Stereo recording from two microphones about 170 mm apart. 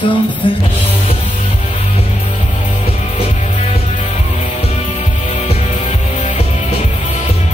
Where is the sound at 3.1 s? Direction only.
40° left (ahead or behind).